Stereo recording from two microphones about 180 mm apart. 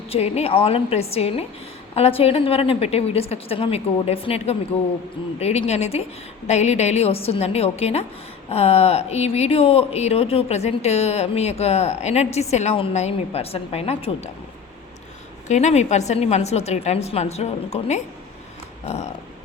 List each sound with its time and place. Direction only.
0.1 s speech: 35° left (ahead or behind)
15.4 s speech: 40° left (ahead or behind)